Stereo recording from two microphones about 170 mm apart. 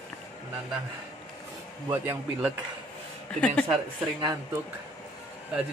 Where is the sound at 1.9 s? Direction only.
15° right (ahead or behind).